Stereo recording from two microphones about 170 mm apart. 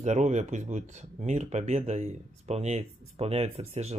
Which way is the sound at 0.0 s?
45° right (ahead or behind).